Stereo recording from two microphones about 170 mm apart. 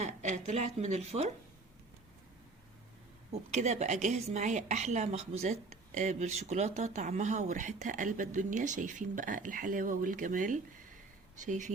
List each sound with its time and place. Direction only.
0.0 s a woman's voice: 45° right (ahead or behind)
3.5 s a woman's voice: 40° right (ahead or behind)